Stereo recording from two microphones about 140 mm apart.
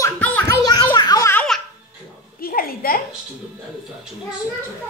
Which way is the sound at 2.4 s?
90° left.